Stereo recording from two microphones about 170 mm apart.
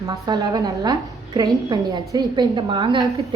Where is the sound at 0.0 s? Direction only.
20° right (ahead or behind).